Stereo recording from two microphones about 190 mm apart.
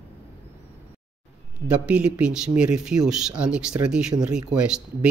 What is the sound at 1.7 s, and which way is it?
Speech, 5° right (ahead or behind).